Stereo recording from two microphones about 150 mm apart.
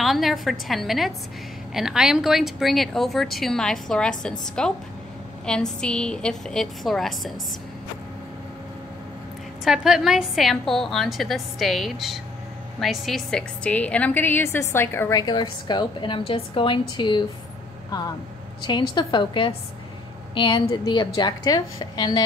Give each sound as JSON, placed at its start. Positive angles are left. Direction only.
{"t": 0.0, "sound": "a woman's voice", "side_deg": 0}
{"t": 9.7, "sound": "a woman's voice", "side_deg": -5}
{"t": 18.6, "sound": "a woman's voice", "side_deg": 30}